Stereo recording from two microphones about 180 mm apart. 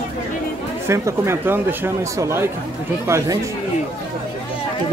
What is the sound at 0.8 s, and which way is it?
Speech, 15° right (ahead or behind).